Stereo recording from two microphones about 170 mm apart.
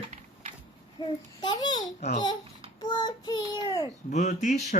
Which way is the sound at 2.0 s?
45° left (ahead or behind).